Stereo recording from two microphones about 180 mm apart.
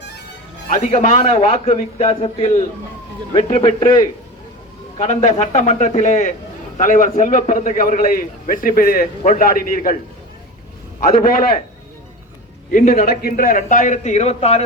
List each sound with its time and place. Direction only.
0.7 s a man's voice: 45° left (ahead or behind); by 4.1 s 20° left (ahead or behind)
4.9 s a man's voice: 40° left (ahead or behind)
11.0 s a man's voice: 55° left (ahead or behind)
12.7 s a man's voice: 45° left (ahead or behind)